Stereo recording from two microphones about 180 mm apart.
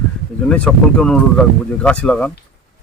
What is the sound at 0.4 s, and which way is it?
Speech, 5° left (ahead or behind).